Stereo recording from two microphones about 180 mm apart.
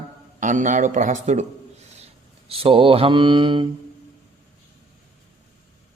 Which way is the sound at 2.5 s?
30° right (ahead or behind).